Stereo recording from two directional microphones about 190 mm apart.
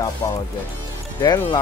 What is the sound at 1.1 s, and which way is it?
Speech, 15° left (ahead or behind).